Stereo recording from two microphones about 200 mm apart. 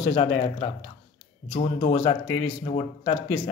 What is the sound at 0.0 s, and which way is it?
Speech, 25° left (ahead or behind).